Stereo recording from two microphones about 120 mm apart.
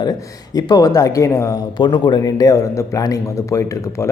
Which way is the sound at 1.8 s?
40° left (ahead or behind).